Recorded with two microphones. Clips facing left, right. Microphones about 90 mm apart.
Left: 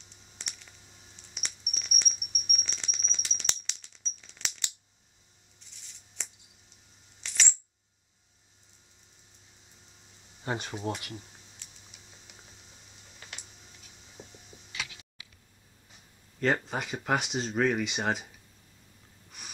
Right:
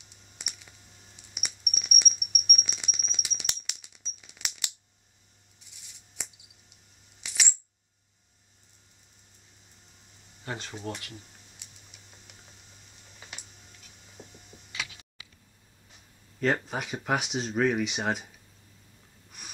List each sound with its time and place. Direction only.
0.4 s clicking: 10° right (ahead or behind)
1.3 s mouse: 10° right (ahead or behind)
5.6 s a sound: 10° right (ahead or behind)
7.2 s coin: 10° right (ahead or behind)
10.4 s speech: 20° left (ahead or behind)
10.7 s speech: 5° left (ahead or behind)
11.6 s a sound: centre (ahead or behind)
15.9 s speech: centre (ahead or behind)